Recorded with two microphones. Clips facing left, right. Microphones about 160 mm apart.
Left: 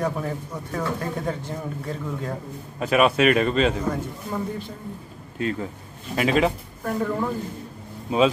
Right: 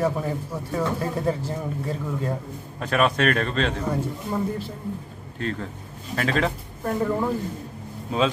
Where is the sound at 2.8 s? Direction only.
5° left (ahead or behind).